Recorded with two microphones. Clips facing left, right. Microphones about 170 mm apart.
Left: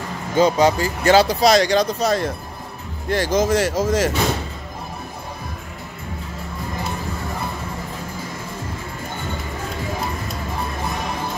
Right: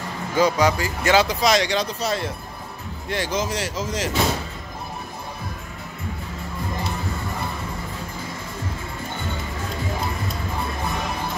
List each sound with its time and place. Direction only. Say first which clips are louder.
0.4 s speech: left 3 dB; 25° left (ahead or behind); by 4.1 s 50° left (ahead or behind)